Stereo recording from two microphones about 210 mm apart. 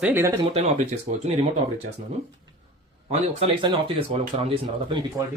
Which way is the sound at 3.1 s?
30° right (ahead or behind).